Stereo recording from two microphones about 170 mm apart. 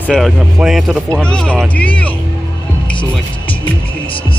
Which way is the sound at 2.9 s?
30° left (ahead or behind).